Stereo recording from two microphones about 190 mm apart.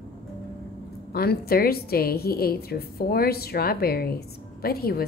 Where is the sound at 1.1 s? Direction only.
50° left (ahead or behind).